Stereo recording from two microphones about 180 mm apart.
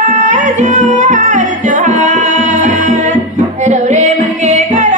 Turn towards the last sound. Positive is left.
turn(degrees=-40)  # may be behind; listen again after turning